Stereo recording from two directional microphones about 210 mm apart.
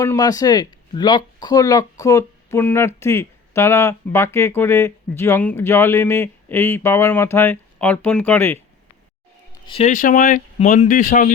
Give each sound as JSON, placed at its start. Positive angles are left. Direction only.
{"t": 0.0, "sound": "speech", "side_deg": 15}
{"t": 9.6, "sound": "speech", "side_deg": 25}
{"t": 9.9, "sound": "speech", "side_deg": 40}